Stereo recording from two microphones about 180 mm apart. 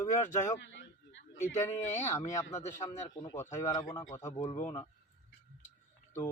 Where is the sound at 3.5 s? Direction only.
15° left (ahead or behind).